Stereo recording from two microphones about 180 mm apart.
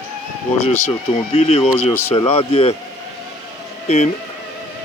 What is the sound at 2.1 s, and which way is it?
Speech, 30° left (ahead or behind).